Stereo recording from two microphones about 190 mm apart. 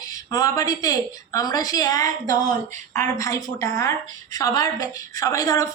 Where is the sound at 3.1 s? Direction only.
15° left (ahead or behind).